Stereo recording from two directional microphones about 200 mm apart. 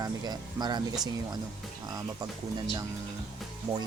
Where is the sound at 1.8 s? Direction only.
20° right (ahead or behind).